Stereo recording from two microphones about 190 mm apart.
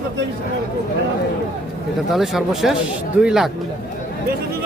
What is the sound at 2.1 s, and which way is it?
Speech, centre (ahead or behind).